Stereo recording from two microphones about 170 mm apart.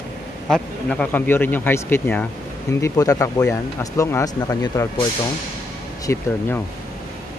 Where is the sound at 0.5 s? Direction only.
5° left (ahead or behind).